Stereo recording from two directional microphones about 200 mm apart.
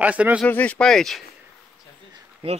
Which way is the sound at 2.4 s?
30° right (ahead or behind).